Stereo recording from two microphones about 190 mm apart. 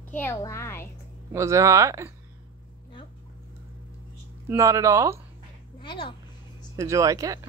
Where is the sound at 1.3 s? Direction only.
15° right (ahead or behind).